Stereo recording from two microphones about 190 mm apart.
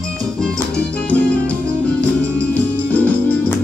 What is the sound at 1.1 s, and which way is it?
Music, 5° left (ahead or behind).